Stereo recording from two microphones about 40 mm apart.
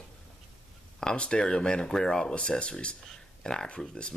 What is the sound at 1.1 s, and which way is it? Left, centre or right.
Speech, left.